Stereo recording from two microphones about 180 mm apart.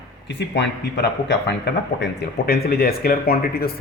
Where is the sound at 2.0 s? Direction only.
60° left (ahead or behind).